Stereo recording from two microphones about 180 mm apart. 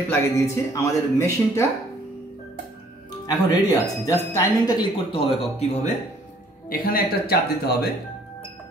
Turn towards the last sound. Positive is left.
turn(degrees=60)  # may be behind; listen again after turning